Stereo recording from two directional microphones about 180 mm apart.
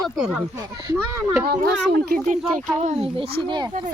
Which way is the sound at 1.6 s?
60° right (ahead or behind).